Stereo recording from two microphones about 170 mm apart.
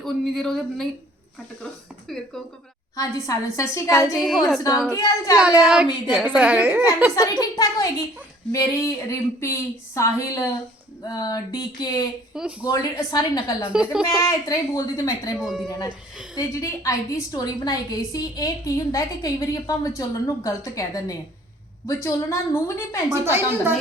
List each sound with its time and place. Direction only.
0.0 s speech: centre (ahead or behind)
2.1 s speech: 5° left (ahead or behind)
2.9 s a woman's voice: 20° left (ahead or behind)
4.1 s speech: centre (ahead or behind)
4.9 s a woman's voice: 20° left (ahead or behind)
5.6 s a woman's voice: 5° right (ahead or behind)
7.2 s a woman's voice: 20° left (ahead or behind)
12.3 s speech: 5° right (ahead or behind)
12.7 s a woman's voice: 20° left (ahead or behind)
13.9 s speech: 5° right (ahead or behind)
14.2 s a woman's voice: 20° left (ahead or behind)
15.4 s speech: centre (ahead or behind)
16.3 s a woman's voice: 20° left (ahead or behind)
23.2 s a woman's voice: 15° right (ahead or behind)